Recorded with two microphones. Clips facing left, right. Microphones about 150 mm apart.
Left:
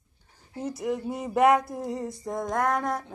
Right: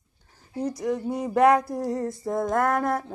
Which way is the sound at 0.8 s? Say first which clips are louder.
Right 1 dB; centre (ahead or behind).